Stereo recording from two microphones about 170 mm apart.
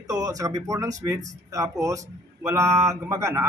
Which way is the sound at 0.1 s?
20° right (ahead or behind).